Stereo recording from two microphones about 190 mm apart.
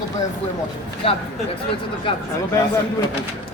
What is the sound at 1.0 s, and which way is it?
Speech, 30° left (ahead or behind).